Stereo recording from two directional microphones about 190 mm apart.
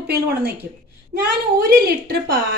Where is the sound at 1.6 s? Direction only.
55° right (ahead or behind).